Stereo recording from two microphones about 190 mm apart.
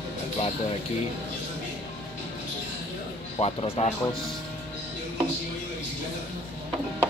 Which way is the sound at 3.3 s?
30° left (ahead or behind).